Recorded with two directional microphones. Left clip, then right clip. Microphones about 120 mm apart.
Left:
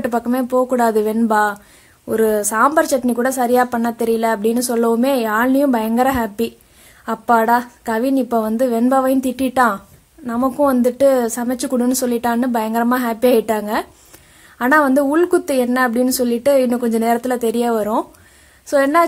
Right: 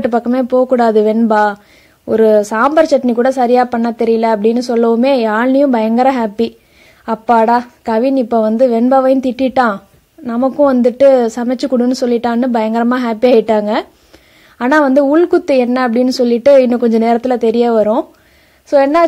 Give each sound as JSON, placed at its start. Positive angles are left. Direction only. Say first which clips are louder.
{"t": 0.0, "sound": "a woman's voice", "louder": "right 5 dB", "side_deg": -30}